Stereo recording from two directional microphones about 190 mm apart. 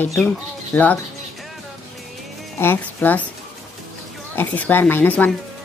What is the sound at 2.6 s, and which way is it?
Speech, 10° left (ahead or behind).